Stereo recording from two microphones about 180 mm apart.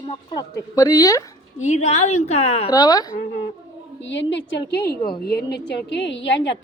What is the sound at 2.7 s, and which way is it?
Speech, 20° left (ahead or behind).